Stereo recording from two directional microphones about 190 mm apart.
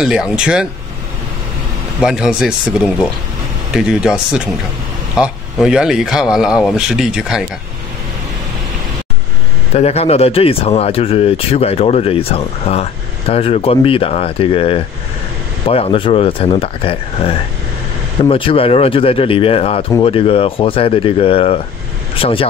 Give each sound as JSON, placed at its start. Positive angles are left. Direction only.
{"t": 0.0, "sound": "speech", "side_deg": -5}
{"t": 2.0, "sound": "speech", "side_deg": -5}
{"t": 5.2, "sound": "speech", "side_deg": -5}
{"t": 9.8, "sound": "speech", "side_deg": 35}